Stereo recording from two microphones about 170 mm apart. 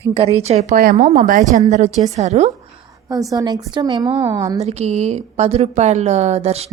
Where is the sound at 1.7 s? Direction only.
40° right (ahead or behind).